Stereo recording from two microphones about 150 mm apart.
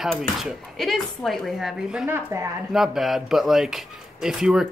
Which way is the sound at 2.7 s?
Centre (ahead or behind).